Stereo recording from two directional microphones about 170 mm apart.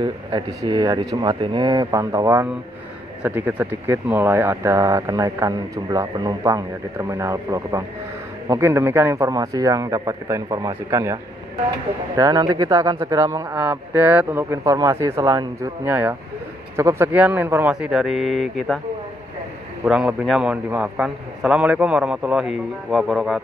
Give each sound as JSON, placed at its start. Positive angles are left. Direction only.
{"t": 0.0, "sound": "a man's voice", "side_deg": -25}
{"t": 12.2, "sound": "a man's voice", "side_deg": -20}
{"t": 19.9, "sound": "a man's voice", "side_deg": -5}